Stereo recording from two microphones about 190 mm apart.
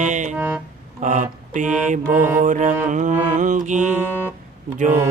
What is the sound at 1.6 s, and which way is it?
Music, 5° right (ahead or behind).